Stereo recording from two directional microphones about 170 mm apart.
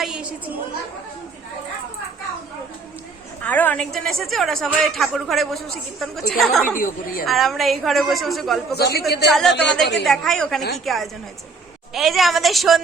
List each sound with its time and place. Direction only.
0.0 s a woman's voice: 5° right (ahead or behind)
3.4 s a woman's voice: 10° left (ahead or behind)
6.7 s speech: 55° left (ahead or behind)
7.3 s a woman's voice: centre (ahead or behind)
8.7 s speech: 70° left (ahead or behind)
9.3 s a woman's voice: centre (ahead or behind)